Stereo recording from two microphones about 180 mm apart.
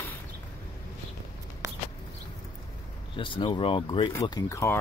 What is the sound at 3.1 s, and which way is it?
Speech, 30° left (ahead or behind).